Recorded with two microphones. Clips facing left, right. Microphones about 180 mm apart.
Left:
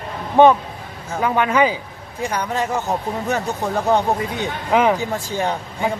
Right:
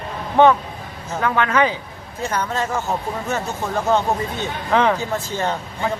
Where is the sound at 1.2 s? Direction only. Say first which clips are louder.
Left 1 dB; 15° left (ahead or behind).